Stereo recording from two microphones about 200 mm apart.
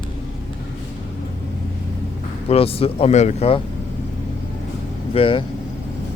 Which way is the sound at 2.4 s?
30° left (ahead or behind).